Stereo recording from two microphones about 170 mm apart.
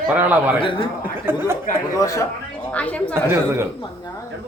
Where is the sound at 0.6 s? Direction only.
30° left (ahead or behind).